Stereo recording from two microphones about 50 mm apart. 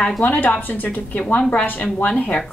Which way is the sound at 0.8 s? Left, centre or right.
Left.